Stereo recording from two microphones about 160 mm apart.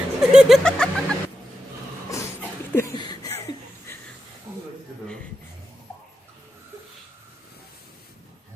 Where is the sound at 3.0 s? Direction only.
25° left (ahead or behind).